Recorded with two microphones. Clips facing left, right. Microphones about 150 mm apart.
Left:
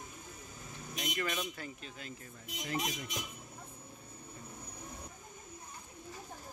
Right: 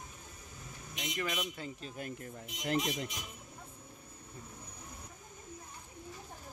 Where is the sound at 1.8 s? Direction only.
50° right (ahead or behind).